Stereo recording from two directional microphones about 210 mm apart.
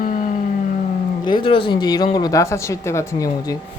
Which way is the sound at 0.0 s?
40° left (ahead or behind).